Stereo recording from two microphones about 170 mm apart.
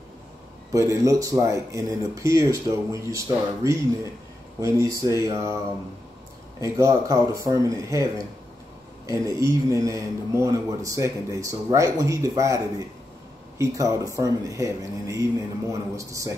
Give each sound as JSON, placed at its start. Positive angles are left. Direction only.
{"t": 0.7, "sound": "a man's voice", "side_deg": -20}
{"t": 6.6, "sound": "a man's voice", "side_deg": -20}